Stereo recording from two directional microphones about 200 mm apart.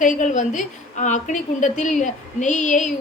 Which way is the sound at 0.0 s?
40° left (ahead or behind).